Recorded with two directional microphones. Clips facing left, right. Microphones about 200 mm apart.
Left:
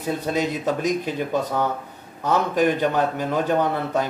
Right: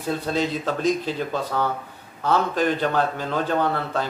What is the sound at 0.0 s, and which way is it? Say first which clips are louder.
A man's voice: left 1 dB; 15° left (ahead or behind).